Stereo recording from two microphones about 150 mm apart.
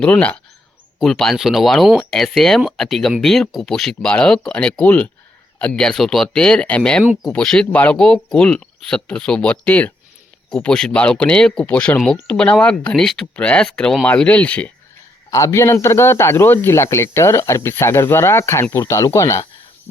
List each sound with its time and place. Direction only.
0.0 s speech: 10° left (ahead or behind)
15.3 s speech: 20° left (ahead or behind)